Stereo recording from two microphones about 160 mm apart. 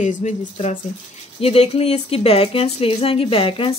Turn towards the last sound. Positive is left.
turn(degrees=35)  # may be behind; listen again after turning